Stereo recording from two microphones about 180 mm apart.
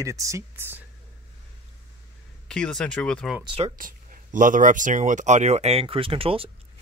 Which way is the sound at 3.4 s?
30° right (ahead or behind).